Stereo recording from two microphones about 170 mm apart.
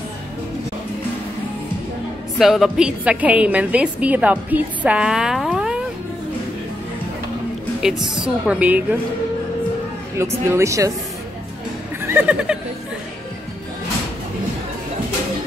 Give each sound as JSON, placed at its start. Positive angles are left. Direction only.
{"t": 2.3, "sound": "a woman's voice", "side_deg": 0}
{"t": 8.5, "sound": "a woman's voice", "side_deg": -10}
{"t": 10.1, "sound": "a woman's voice", "side_deg": -15}
{"t": 12.0, "sound": "a sound", "side_deg": -10}